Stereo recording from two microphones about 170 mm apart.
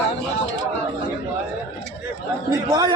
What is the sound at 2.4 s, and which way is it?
Speech, 20° right (ahead or behind).